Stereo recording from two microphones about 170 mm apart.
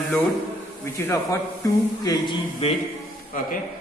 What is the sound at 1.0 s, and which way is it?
A man's voice, 15° left (ahead or behind).